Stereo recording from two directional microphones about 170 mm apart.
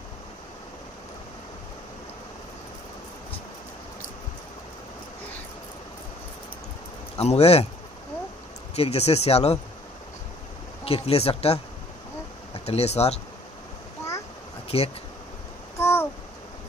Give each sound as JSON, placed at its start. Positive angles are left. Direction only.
{"t": 7.2, "sound": "speech", "side_deg": 35}
{"t": 8.7, "sound": "speech", "side_deg": 35}
{"t": 10.8, "sound": "speech", "side_deg": 35}
{"t": 14.7, "sound": "speech", "side_deg": 35}
{"t": 15.8, "sound": "a sound", "side_deg": 15}